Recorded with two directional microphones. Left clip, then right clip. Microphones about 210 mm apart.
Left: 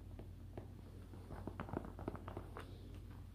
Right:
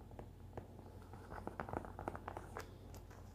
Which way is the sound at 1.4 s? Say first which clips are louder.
Right 2 dB; 20° right (ahead or behind).